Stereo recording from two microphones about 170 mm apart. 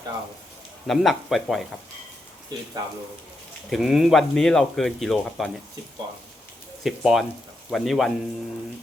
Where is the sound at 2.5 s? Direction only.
25° right (ahead or behind).